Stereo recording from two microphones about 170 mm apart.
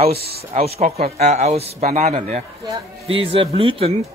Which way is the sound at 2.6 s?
30° right (ahead or behind).